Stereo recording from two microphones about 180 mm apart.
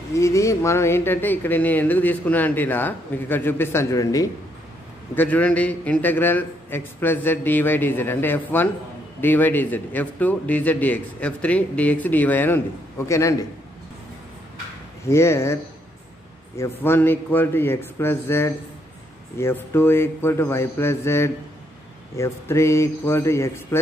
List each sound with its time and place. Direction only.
0.1 s speech: 15° left (ahead or behind)
15.0 s speech: 15° left (ahead or behind)